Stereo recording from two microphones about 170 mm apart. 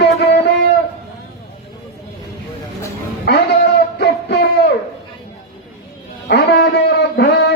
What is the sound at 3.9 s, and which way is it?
Music, 75° left (ahead or behind).